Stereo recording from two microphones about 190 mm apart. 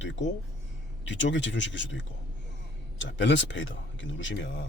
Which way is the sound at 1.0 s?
70° left (ahead or behind).